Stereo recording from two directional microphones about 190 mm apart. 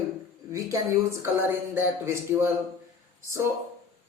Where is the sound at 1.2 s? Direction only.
10° right (ahead or behind).